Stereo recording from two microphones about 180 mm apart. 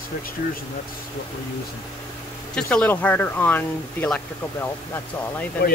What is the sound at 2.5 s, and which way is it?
Speech, 5° left (ahead or behind).